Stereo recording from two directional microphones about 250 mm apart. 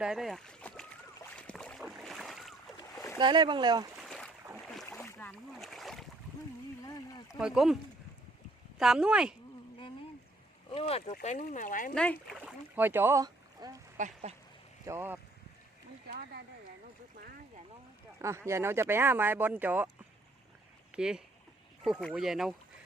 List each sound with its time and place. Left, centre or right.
0.0 s speech: centre
1.2 s boat: centre
3.2 s speech: centre
3.9 s boat: centre
6.8 s a sound: centre
7.3 s speech: centre
8.8 s speech: centre
10.7 s speech: left
11.9 s speech: centre
12.4 s boat: centre
13.9 s speech: right
14.8 s speech: centre
18.2 s speech: centre
20.9 s speech: centre